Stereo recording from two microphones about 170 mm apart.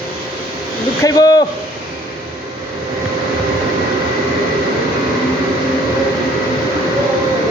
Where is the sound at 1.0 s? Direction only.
20° left (ahead or behind).